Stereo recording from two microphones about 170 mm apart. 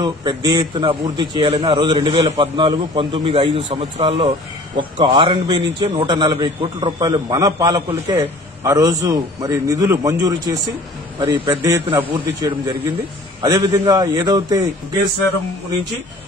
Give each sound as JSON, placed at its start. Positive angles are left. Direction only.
{"t": 0.0, "sound": "a man's voice", "side_deg": -25}